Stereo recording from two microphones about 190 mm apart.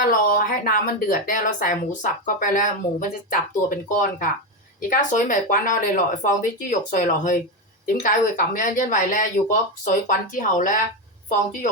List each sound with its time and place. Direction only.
0.0 s speech: 50° left (ahead or behind)